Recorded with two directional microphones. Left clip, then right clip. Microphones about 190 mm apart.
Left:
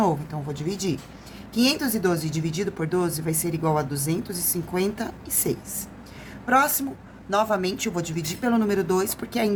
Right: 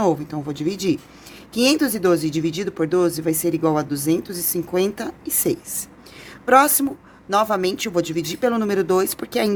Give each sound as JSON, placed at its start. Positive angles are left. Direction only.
{"t": 0.0, "sound": "a woman's voice", "side_deg": -40}